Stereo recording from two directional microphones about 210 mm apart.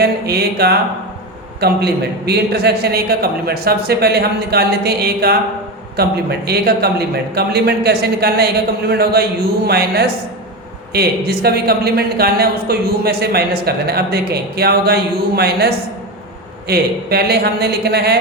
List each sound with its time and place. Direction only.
0.0 s speech: 50° right (ahead or behind)